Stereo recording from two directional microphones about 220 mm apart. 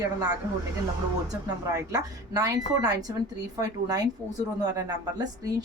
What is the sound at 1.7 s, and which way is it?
A woman's voice, 15° right (ahead or behind).